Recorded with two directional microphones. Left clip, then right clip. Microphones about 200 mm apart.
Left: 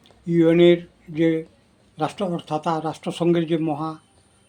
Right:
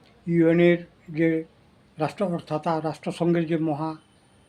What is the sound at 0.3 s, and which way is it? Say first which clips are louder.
A man's voice: left 4 dB; 15° right (ahead or behind).